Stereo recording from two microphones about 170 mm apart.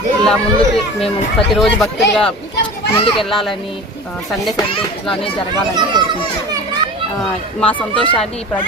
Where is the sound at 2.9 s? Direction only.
35° left (ahead or behind).